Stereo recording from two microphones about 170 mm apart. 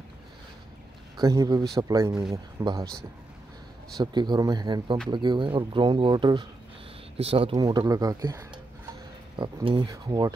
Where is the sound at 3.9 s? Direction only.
25° right (ahead or behind).